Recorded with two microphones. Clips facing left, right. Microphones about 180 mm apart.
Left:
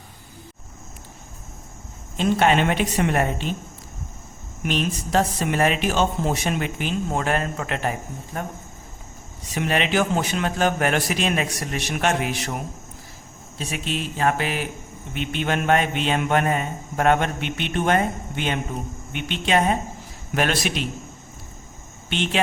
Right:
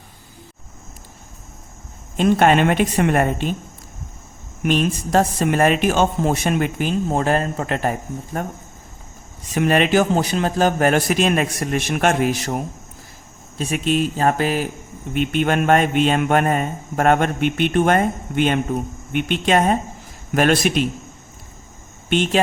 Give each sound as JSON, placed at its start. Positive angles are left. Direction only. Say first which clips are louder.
{"t": 2.1, "sound": "a woman's voice", "louder": "right 4 dB", "side_deg": -50}
{"t": 4.6, "sound": "a woman's voice", "louder": "right 5 dB", "side_deg": -45}
{"t": 9.6, "sound": "a woman's voice", "louder": "right 6 dB", "side_deg": -45}
{"t": 13.6, "sound": "speech", "louder": "right 8 dB", "side_deg": -50}
{"t": 15.1, "sound": "a woman's voice", "louder": "right 6 dB", "side_deg": -50}
{"t": 22.1, "sound": "a woman's voice", "louder": "right 7 dB", "side_deg": -45}